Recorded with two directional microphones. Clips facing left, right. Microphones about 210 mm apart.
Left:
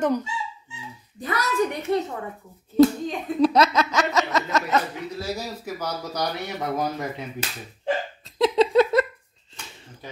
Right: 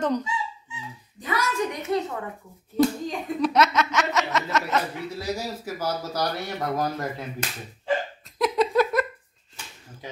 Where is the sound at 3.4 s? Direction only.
35° left (ahead or behind).